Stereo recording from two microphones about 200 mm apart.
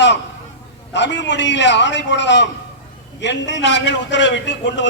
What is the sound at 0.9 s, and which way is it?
A man's voice, 60° left (ahead or behind).